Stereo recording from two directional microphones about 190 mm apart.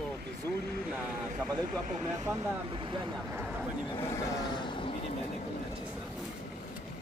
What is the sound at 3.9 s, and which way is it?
Speech, 25° left (ahead or behind).